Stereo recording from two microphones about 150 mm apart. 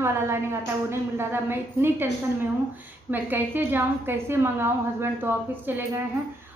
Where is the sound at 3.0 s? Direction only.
15° right (ahead or behind).